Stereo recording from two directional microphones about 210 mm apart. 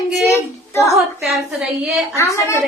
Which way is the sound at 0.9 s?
Centre (ahead or behind).